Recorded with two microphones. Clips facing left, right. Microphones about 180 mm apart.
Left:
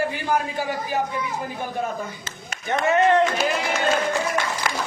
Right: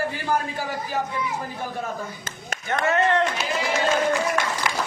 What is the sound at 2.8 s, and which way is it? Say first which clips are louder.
Speech: left 3 dB; 15° left (ahead or behind).